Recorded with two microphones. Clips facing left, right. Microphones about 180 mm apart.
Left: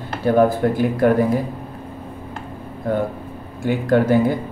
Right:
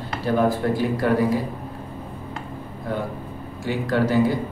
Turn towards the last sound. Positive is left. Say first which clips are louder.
# left 4 dB
turn(degrees=55)  # may be behind; listen again after turning